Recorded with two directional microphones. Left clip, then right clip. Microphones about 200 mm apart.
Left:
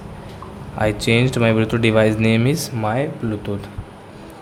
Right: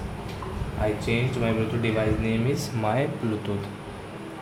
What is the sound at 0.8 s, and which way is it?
Speech, 55° left (ahead or behind).